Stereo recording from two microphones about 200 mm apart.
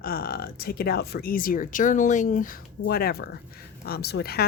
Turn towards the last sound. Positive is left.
turn(degrees=50)  # may be behind; listen again after turning